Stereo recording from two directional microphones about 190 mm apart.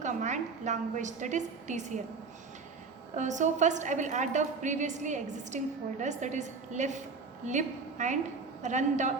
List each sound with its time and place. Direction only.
0.0 s a woman's voice: 40° right (ahead or behind)
3.2 s a woman's voice: 40° right (ahead or behind)